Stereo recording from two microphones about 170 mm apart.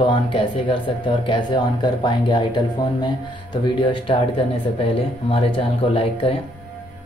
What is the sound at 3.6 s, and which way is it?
Speech, 30° left (ahead or behind).